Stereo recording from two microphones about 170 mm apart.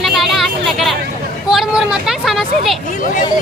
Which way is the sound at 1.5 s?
5° right (ahead or behind).